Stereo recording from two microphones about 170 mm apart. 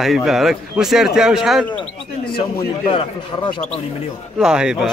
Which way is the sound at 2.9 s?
30° left (ahead or behind).